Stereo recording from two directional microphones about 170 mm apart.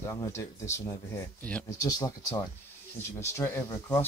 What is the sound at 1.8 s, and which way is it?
Speech, 20° left (ahead or behind).